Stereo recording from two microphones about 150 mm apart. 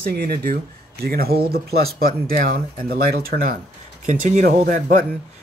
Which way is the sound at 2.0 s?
70° right (ahead or behind).